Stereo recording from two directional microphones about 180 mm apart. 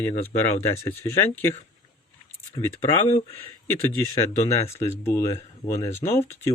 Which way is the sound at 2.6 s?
20° left (ahead or behind).